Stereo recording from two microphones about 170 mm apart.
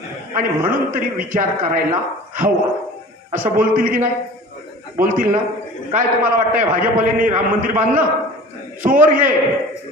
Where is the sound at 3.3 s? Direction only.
55° right (ahead or behind).